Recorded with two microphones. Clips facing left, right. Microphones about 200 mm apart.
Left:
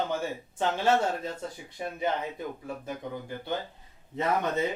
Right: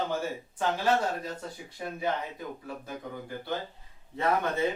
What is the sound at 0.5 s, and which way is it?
Speech, 25° left (ahead or behind).